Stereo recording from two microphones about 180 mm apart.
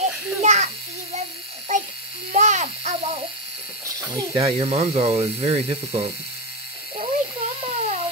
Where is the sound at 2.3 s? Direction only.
40° right (ahead or behind).